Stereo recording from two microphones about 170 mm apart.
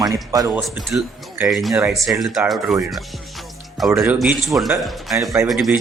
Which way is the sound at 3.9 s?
10° right (ahead or behind).